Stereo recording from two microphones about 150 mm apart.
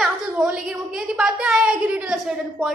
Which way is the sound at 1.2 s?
5° right (ahead or behind).